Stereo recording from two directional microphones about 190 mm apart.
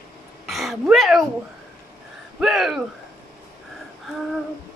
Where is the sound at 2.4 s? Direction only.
Centre (ahead or behind).